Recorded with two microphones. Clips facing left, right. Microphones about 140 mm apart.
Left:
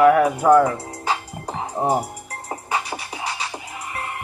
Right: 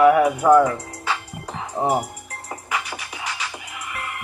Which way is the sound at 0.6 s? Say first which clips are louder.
Even; 30° left (ahead or behind).